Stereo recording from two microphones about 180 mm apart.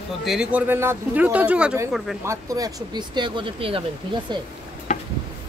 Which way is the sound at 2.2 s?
15° right (ahead or behind).